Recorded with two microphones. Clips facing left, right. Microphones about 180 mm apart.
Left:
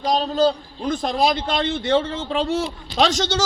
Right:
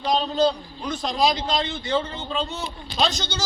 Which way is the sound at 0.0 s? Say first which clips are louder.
Left 2 dB; 40° left (ahead or behind).